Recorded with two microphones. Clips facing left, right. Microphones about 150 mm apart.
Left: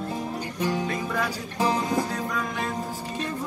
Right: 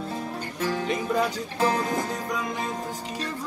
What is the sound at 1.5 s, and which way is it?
Music, 20° left (ahead or behind).